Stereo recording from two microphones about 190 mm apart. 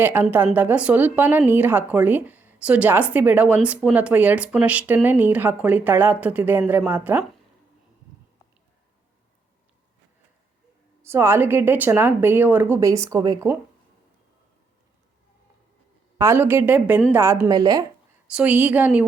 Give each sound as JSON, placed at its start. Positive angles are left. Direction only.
{"t": 0.0, "sound": "speech", "side_deg": -10}
{"t": 11.0, "sound": "speech", "side_deg": -10}
{"t": 16.2, "sound": "speech", "side_deg": -10}
{"t": 18.3, "sound": "speech", "side_deg": -5}